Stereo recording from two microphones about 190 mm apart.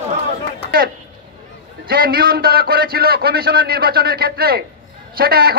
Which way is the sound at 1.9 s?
50° right (ahead or behind).